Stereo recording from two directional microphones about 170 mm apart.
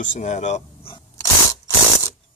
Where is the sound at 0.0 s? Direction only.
45° left (ahead or behind).